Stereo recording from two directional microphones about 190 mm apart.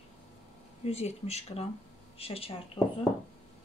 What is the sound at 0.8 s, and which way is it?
Speech, 35° left (ahead or behind).